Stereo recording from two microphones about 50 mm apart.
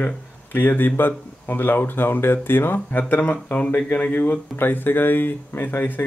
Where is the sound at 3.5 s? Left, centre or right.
Left.